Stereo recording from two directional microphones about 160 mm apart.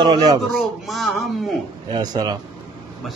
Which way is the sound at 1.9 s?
25° right (ahead or behind).